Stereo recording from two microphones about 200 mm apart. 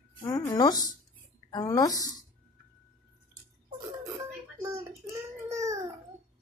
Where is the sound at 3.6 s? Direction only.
15° right (ahead or behind).